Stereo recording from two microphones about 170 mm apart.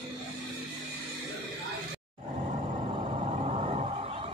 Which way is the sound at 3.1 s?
35° right (ahead or behind).